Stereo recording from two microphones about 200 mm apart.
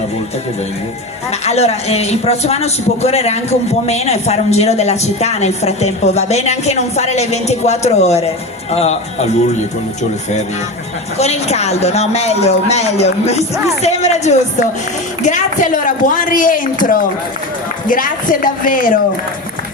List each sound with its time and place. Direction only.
1.3 s a man's voice: 30° left (ahead or behind)
11.2 s a man's voice: 30° left (ahead or behind)